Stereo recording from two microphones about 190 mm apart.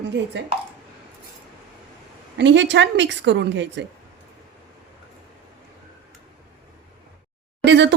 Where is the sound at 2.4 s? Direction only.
70° right (ahead or behind).